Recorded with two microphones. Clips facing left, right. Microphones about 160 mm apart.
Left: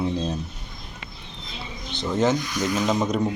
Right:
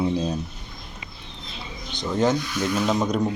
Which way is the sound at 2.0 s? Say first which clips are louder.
Even; centre (ahead or behind).